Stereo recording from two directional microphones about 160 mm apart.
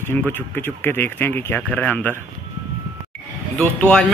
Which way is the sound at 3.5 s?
5° left (ahead or behind).